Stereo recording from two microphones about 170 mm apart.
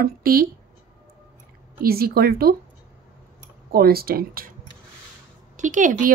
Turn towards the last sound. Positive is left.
turn(degrees=-50)  # may be behind; listen again after turning